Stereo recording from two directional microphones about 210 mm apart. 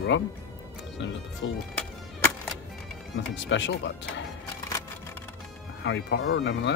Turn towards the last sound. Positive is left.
turn(degrees=55)  # may be behind; listen again after turning